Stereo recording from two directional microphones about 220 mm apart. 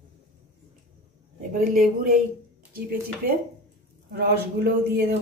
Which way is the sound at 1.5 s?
40° right (ahead or behind).